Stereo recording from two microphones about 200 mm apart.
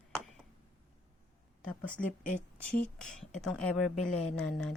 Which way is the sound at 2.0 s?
45° left (ahead or behind).